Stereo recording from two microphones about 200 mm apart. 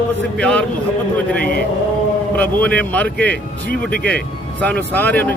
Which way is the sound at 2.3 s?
5° left (ahead or behind).